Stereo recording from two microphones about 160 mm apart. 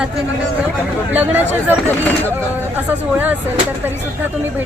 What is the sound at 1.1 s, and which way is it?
Speech, 10° right (ahead or behind).